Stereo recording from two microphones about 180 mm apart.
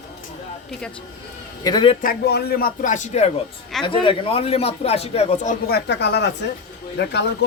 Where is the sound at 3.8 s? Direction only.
30° left (ahead or behind).